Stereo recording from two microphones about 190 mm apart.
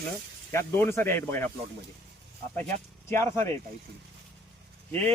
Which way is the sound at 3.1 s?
15° left (ahead or behind).